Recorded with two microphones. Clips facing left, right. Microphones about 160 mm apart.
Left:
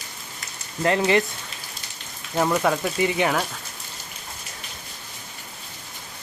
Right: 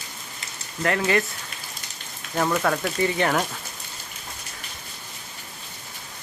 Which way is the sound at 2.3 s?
10° left (ahead or behind).